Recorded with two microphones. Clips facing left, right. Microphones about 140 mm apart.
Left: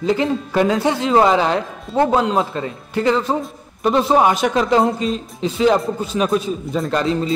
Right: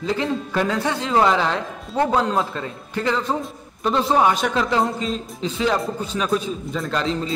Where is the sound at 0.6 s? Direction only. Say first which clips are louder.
Left 7 dB; 15° left (ahead or behind).